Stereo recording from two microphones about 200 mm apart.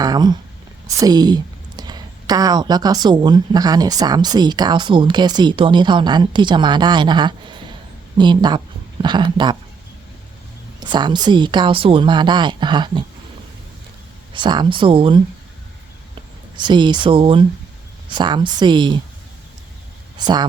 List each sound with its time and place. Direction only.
0.0 s speech: 20° right (ahead or behind)
10.8 s speech: 20° right (ahead or behind)
14.3 s speech: 25° right (ahead or behind)
16.6 s speech: 25° right (ahead or behind)
20.1 s speech: 20° right (ahead or behind)